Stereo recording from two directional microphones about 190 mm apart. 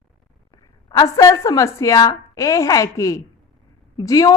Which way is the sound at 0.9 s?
20° left (ahead or behind).